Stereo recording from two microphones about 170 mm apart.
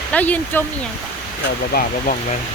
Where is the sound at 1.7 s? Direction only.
65° left (ahead or behind).